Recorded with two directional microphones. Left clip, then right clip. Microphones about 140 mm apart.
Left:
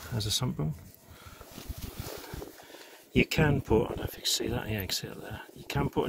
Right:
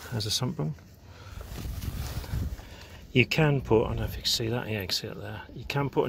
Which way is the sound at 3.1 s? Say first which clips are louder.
Right 2 dB; centre (ahead or behind).